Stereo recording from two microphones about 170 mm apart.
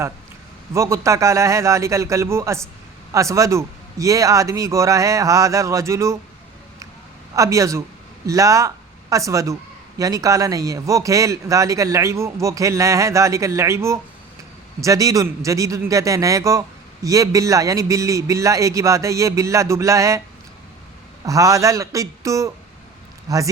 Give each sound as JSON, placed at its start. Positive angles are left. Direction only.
{"t": 0.7, "sound": "a man's voice", "side_deg": -15}
{"t": 7.3, "sound": "a man's voice", "side_deg": -20}
{"t": 21.2, "sound": "a man's voice", "side_deg": -20}